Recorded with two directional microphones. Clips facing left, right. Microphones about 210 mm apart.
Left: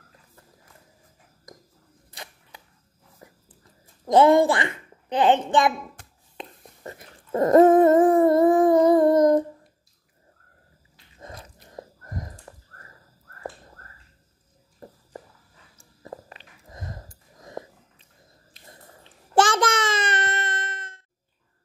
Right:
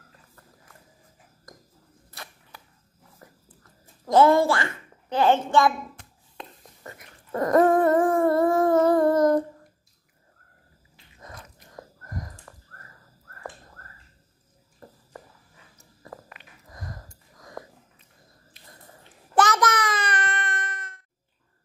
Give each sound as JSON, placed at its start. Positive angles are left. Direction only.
{"t": 2.0, "sound": "arrow", "side_deg": 15}
{"t": 3.2, "sound": "a sound", "side_deg": 15}
{"t": 6.3, "sound": "dog", "side_deg": 30}
{"t": 11.1, "sound": "biting", "side_deg": 30}
{"t": 14.8, "sound": "a sound", "side_deg": 20}
{"t": 19.3, "sound": "child singing", "side_deg": 30}